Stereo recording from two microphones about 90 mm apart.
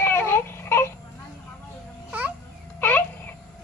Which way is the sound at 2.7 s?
20° left (ahead or behind).